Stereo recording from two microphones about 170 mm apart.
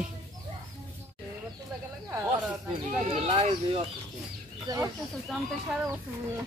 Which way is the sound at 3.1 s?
35° right (ahead or behind).